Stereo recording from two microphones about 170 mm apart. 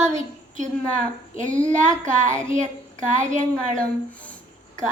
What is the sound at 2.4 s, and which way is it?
Speech, 45° right (ahead or behind).